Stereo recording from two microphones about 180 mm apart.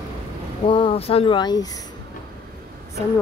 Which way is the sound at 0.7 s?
30° left (ahead or behind).